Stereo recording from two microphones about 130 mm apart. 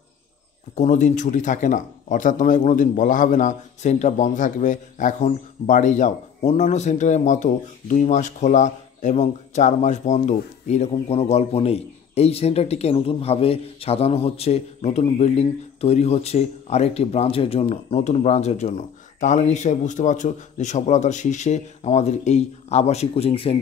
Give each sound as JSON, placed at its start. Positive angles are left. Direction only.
{"t": 0.7, "sound": "speech", "side_deg": 70}